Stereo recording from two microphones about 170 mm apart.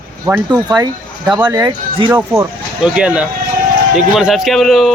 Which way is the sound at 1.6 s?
25° right (ahead or behind).